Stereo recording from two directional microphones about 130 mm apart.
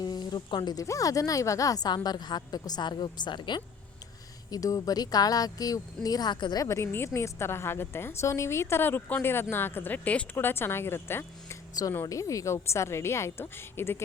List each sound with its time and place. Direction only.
0.0 s a woman's voice: 30° left (ahead or behind)